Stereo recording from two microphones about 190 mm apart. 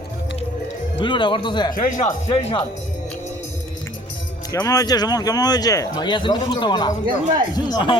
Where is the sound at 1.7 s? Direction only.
45° left (ahead or behind).